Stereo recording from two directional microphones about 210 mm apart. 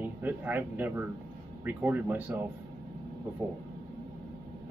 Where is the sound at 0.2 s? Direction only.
10° right (ahead or behind).